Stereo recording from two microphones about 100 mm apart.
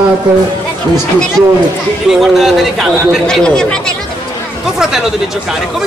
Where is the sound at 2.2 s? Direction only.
Centre (ahead or behind).